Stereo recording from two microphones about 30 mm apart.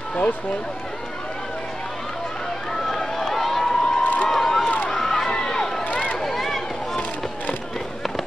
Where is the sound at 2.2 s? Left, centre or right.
Left; by 3.7 s centre.